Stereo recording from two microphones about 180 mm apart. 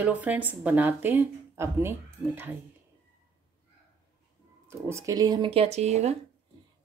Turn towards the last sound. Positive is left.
turn(degrees=-35)  # may be behind; listen again after turning